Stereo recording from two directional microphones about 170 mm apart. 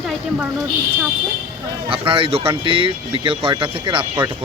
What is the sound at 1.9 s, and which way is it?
Speech, 30° right (ahead or behind).